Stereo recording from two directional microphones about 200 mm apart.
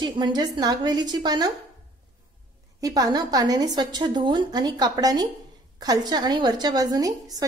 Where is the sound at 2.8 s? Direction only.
20° right (ahead or behind).